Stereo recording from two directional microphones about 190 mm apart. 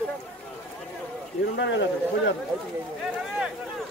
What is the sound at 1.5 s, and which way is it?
Speech, 70° left (ahead or behind).